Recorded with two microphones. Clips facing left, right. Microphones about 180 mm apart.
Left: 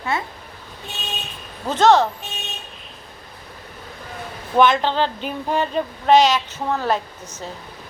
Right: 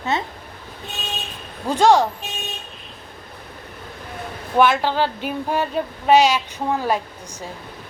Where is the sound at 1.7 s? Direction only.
10° right (ahead or behind).